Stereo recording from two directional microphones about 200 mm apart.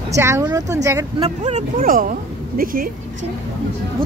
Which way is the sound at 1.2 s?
35° right (ahead or behind).